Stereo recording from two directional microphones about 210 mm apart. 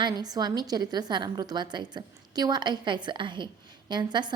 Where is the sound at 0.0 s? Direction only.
20° right (ahead or behind).